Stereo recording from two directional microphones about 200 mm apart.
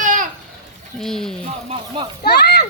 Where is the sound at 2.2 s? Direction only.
55° left (ahead or behind).